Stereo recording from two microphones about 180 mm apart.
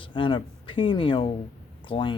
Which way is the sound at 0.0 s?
30° left (ahead or behind).